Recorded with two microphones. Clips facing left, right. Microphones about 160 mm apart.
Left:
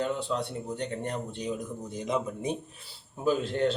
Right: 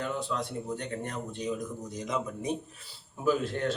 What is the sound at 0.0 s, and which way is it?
A man's voice, 30° left (ahead or behind).